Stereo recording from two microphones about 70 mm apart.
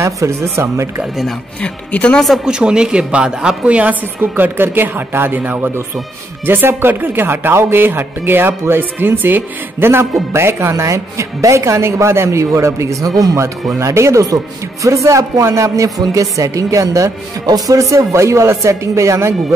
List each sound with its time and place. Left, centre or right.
0.0 s speech: right
1.6 s speech: centre
2.1 s speech: centre
2.4 s a woman's voice: centre
4.2 s speech: right
13.1 s speech: right
13.7 s speech: right